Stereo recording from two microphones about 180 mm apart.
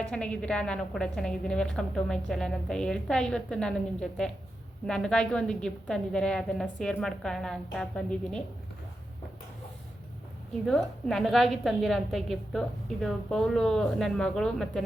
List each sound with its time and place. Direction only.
0.1 s a woman's voice: 5° left (ahead or behind)
10.7 s a woman's voice: centre (ahead or behind)